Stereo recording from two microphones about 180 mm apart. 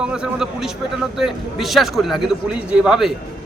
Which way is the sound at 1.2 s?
Centre (ahead or behind).